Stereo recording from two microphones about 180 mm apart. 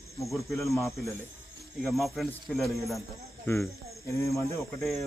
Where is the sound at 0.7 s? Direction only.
15° left (ahead or behind).